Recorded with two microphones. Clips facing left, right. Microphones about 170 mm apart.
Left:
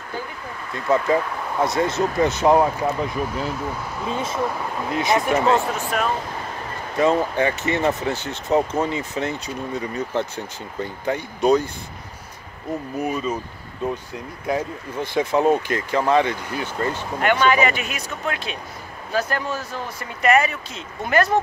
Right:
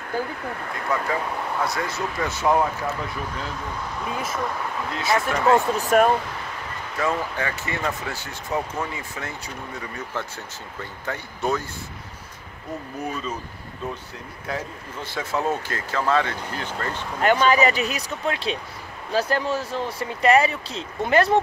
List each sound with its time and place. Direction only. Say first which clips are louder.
0.9 s speech: left 6 dB; 25° left (ahead or behind)
5.8 s speech: right 6 dB; 45° right (ahead or behind)
7.0 s speech: left 7 dB; 20° left (ahead or behind)
13.0 s speech: left 5 dB; 10° left (ahead or behind)
14.5 s speech: left 7 dB; 15° left (ahead or behind)
17.2 s speech: even; 35° right (ahead or behind)